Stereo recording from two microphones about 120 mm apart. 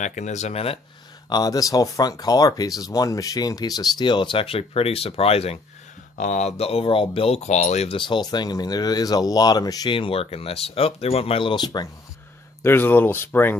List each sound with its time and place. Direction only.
0.0 s speech: 85° left; by 0.7 s 60° left (ahead or behind)
1.3 s speech: 30° left (ahead or behind); by 5.6 s 55° left (ahead or behind)
6.1 s speech: 85° left
7.9 s speech: 40° left (ahead or behind)
9.8 s speech: 45° left (ahead or behind)
12.6 s speech: 15° left (ahead or behind)